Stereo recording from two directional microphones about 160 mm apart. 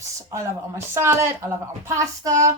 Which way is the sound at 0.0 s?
20° right (ahead or behind).